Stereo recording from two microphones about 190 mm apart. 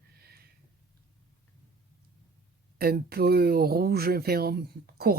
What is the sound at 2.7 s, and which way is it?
Speech, 55° right (ahead or behind).